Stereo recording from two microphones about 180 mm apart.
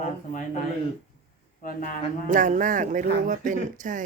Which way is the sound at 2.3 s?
45° right (ahead or behind).